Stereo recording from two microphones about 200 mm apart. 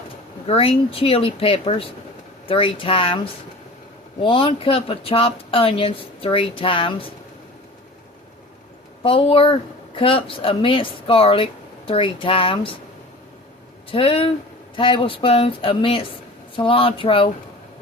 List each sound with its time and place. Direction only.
0.4 s speech: 30° left (ahead or behind)
4.2 s speech: 25° left (ahead or behind)
9.0 s speech: 25° left (ahead or behind)
13.9 s speech: 25° left (ahead or behind)